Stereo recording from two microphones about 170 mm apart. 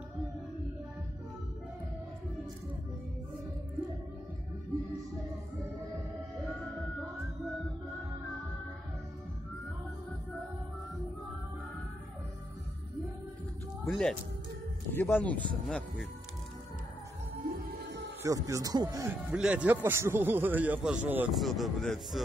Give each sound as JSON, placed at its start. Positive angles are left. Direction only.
{"t": 13.8, "sound": "speech", "side_deg": 5}
{"t": 17.5, "sound": "music", "side_deg": -80}
{"t": 18.2, "sound": "speech", "side_deg": -20}
{"t": 19.3, "sound": "a man's voice", "side_deg": -5}